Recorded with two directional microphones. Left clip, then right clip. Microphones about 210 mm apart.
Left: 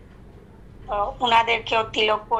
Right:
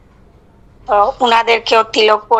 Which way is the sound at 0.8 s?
55° right (ahead or behind).